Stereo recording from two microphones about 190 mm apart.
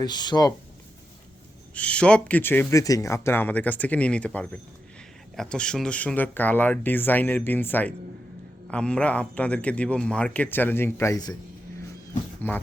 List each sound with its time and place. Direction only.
0.0 s speech: 20° left (ahead or behind)
1.7 s speech: 5° left (ahead or behind)
12.4 s speech: 10° left (ahead or behind)